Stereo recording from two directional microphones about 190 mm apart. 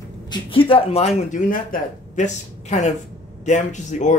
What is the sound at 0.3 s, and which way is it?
Speech, 30° left (ahead or behind).